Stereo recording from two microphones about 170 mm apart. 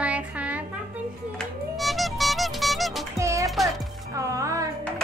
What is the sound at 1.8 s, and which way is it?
Music, centre (ahead or behind).